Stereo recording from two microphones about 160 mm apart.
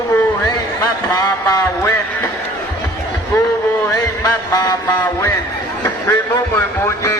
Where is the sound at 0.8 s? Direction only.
20° left (ahead or behind).